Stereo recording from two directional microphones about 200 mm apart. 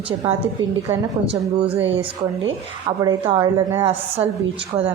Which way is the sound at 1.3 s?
30° right (ahead or behind).